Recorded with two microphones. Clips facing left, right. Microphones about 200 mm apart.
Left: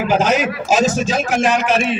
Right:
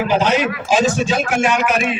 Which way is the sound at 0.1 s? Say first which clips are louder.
Left 2 dB; 45° left (ahead or behind).